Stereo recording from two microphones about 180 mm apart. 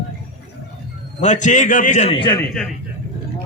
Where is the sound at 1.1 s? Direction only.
40° left (ahead or behind); by 2.4 s 25° left (ahead or behind).